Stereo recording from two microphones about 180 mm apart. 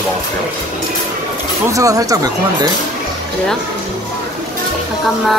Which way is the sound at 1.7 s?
20° right (ahead or behind).